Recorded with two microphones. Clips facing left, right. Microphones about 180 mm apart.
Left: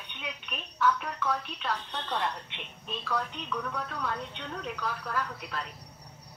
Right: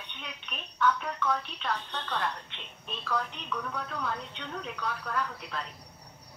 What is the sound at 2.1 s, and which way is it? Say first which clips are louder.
Speech: left 1 dB; 20° left (ahead or behind).